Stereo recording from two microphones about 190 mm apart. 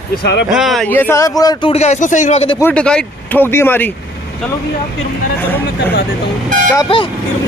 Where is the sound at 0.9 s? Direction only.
10° left (ahead or behind).